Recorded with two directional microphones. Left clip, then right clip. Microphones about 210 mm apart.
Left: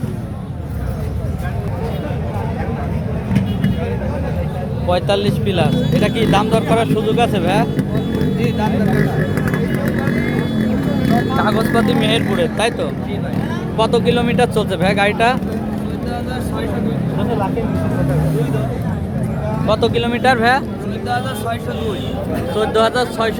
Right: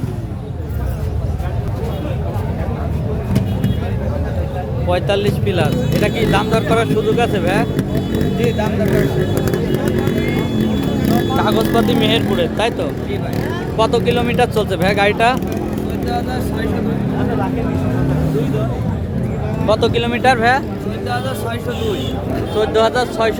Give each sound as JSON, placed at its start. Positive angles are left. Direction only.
{"t": 4.9, "sound": "speech", "side_deg": 5}
{"t": 8.4, "sound": "speech", "side_deg": -35}
{"t": 11.3, "sound": "speech", "side_deg": 0}
{"t": 19.6, "sound": "speech", "side_deg": -5}
{"t": 22.5, "sound": "speech", "side_deg": 5}